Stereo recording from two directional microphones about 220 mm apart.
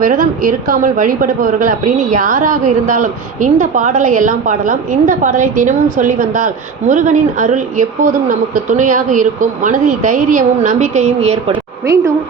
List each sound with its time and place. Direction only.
0.0 s speech: 40° right (ahead or behind)